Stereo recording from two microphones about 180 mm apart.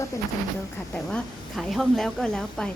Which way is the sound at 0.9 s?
5° left (ahead or behind).